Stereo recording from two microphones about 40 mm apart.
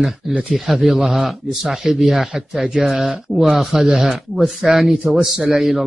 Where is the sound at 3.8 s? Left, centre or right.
Centre.